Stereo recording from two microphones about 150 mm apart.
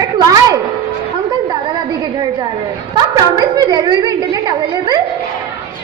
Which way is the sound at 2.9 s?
25° right (ahead or behind).